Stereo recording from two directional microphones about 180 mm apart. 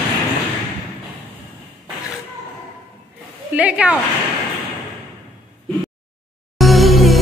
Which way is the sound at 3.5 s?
10° right (ahead or behind).